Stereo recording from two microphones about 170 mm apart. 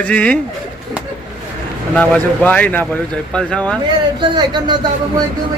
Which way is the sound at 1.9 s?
10° left (ahead or behind).